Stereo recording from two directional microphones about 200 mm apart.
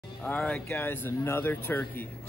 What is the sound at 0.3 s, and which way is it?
A man's voice, 5° left (ahead or behind).